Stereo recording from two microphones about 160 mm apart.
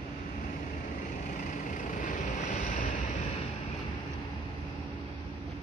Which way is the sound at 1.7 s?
60° left (ahead or behind).